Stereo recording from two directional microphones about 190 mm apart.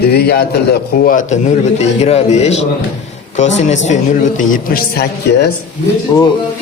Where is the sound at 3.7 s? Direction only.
40° left (ahead or behind); by 5.5 s 55° left (ahead or behind).